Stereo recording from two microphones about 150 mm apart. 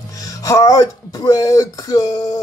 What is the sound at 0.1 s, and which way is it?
Speech, 25° left (ahead or behind).